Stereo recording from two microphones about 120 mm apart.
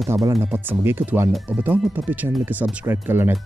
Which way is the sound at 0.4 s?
15° right (ahead or behind).